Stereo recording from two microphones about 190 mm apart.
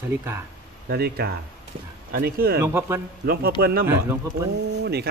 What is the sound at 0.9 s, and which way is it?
Speech, 55° right (ahead or behind).